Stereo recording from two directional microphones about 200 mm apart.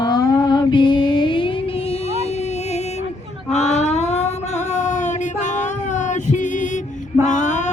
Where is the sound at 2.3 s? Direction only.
35° left (ahead or behind).